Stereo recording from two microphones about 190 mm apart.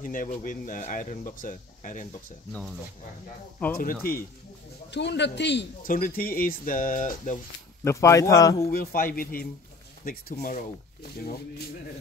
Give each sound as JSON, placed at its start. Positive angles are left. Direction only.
{"t": 0.0, "sound": "speech", "side_deg": 45}
{"t": 3.7, "sound": "speech", "side_deg": 50}
{"t": 4.9, "sound": "a man's voice", "side_deg": 65}
{"t": 5.9, "sound": "speech", "side_deg": 45}
{"t": 7.8, "sound": "a man's voice", "side_deg": 15}
{"t": 8.6, "sound": "speech", "side_deg": 50}